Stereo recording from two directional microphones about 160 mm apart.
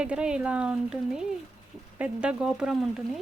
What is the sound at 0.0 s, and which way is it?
Speech, 5° right (ahead or behind).